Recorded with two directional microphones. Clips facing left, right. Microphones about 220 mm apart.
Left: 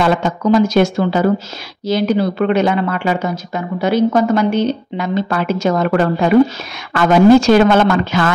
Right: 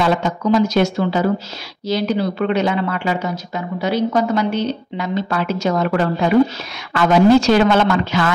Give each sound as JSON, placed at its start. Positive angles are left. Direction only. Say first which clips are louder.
{"t": 0.0, "sound": "speech", "louder": "left 3 dB", "side_deg": 50}